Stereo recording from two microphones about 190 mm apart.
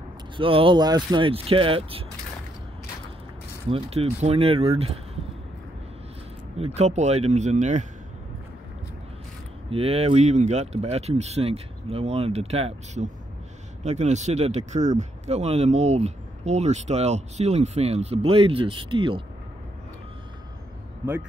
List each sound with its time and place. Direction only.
0.4 s speech: 30° right (ahead or behind)
3.6 s speech: 30° right (ahead or behind)
6.6 s speech: 35° right (ahead or behind)
9.7 s speech: 30° right (ahead or behind)